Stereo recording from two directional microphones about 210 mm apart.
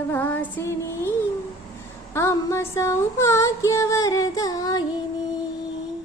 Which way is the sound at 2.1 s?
15° left (ahead or behind).